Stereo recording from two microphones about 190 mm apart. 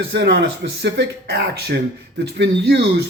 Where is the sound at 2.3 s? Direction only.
65° right (ahead or behind).